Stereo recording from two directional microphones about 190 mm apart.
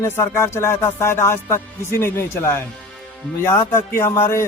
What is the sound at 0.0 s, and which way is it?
Music, 15° left (ahead or behind).